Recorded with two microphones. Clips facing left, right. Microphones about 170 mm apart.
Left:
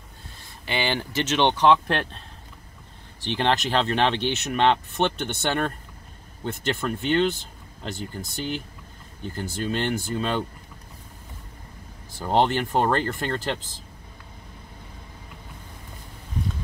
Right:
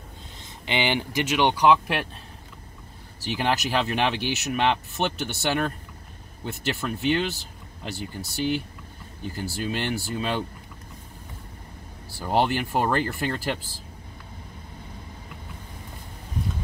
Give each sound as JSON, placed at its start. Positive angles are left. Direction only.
{"t": 0.4, "sound": "speech", "side_deg": -20}
{"t": 3.3, "sound": "speech", "side_deg": -5}
{"t": 12.3, "sound": "speech", "side_deg": -5}